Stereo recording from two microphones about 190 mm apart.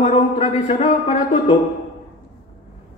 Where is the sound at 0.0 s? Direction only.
30° left (ahead or behind).